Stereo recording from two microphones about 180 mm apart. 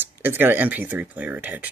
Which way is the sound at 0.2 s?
10° right (ahead or behind).